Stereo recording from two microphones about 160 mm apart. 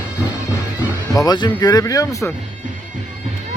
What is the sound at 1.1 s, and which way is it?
Speech, 25° left (ahead or behind).